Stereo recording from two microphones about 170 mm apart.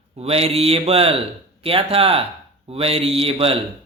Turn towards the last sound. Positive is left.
turn(degrees=-35)  # may be behind; listen again after turning